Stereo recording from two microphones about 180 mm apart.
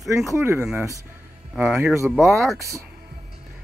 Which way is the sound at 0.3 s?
15° right (ahead or behind).